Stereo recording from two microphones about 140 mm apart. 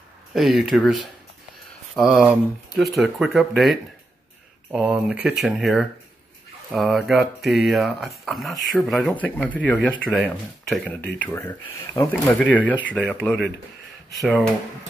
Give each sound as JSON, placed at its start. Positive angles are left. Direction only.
{"t": 0.3, "sound": "speech", "side_deg": 0}
{"t": 2.0, "sound": "speech", "side_deg": -5}
{"t": 9.1, "sound": "speech", "side_deg": 10}
{"t": 10.1, "sound": "speech", "side_deg": 0}
{"t": 10.9, "sound": "speech", "side_deg": 10}
{"t": 12.3, "sound": "speech", "side_deg": 10}